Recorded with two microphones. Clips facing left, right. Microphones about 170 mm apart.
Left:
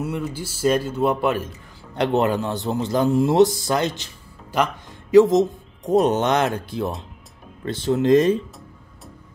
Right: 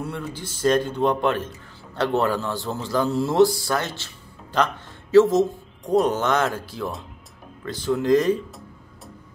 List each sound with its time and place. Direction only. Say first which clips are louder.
0.0 s a man's voice: left 4 dB; 10° left (ahead or behind)
2.0 s a man's voice: left 2 dB; 20° left (ahead or behind)